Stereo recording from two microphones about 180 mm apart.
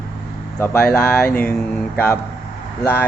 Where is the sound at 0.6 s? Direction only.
10° left (ahead or behind).